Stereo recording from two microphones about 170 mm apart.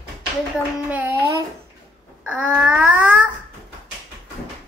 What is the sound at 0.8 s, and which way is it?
Speech, 10° right (ahead or behind).